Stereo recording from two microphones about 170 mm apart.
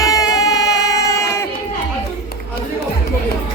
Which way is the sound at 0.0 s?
20° left (ahead or behind).